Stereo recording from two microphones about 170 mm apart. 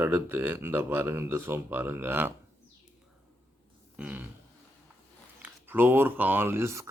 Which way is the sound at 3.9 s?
10° right (ahead or behind).